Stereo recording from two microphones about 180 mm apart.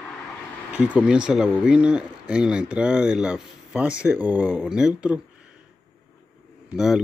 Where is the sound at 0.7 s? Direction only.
5° right (ahead or behind).